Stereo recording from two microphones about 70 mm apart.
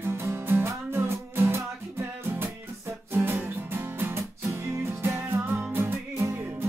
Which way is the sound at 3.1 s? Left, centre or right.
Right.